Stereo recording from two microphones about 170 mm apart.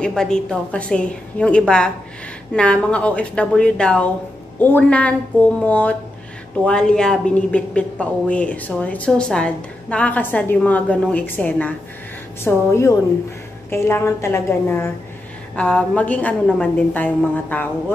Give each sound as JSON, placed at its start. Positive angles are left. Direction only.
{"t": 0.0, "sound": "a woman's voice", "side_deg": 5}